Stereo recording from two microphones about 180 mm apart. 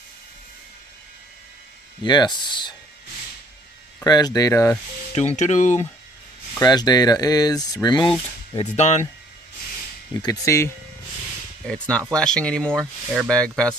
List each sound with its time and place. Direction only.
2.0 s speech: 25° left (ahead or behind)
4.0 s speech: 20° left (ahead or behind)
5.1 s speech: 40° left (ahead or behind)
6.6 s speech: 20° left (ahead or behind)
8.5 s speech: 40° left (ahead or behind)
10.2 s speech: 15° left (ahead or behind)
11.6 s speech: 5° left (ahead or behind)